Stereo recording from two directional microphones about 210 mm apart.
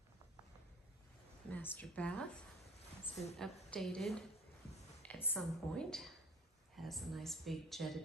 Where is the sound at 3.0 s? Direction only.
30° left (ahead or behind).